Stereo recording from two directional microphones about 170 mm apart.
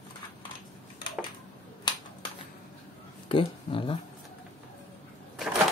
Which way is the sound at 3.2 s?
30° left (ahead or behind).